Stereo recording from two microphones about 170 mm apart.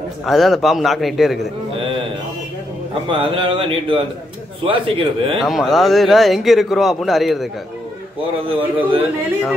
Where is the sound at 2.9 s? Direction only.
30° right (ahead or behind).